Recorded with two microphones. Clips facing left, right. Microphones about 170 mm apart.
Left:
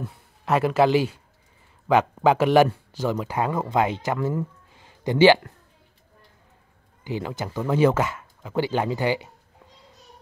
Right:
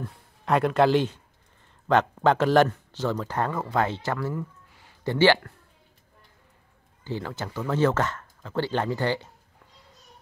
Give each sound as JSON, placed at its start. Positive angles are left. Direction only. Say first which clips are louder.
{"t": 0.0, "sound": "speech", "louder": "left 1 dB", "side_deg": 5}
{"t": 7.1, "sound": "speech", "louder": "left 3 dB", "side_deg": 15}